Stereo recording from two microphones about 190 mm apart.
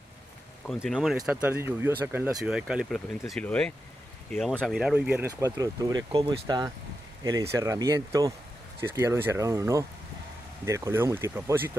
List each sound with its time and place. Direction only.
0.7 s speech: centre (ahead or behind)
5.3 s speech: 20° right (ahead or behind)